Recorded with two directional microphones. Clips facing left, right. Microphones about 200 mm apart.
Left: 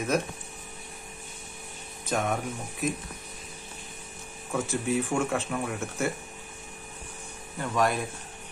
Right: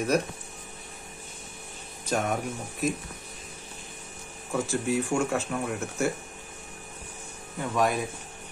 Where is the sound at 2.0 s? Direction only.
Centre (ahead or behind).